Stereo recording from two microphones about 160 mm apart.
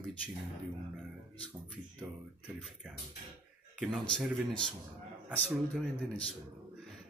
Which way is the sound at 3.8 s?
5° right (ahead or behind).